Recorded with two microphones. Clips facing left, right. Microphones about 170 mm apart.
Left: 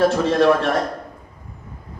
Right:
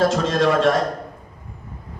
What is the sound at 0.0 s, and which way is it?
Speech, 75° right (ahead or behind).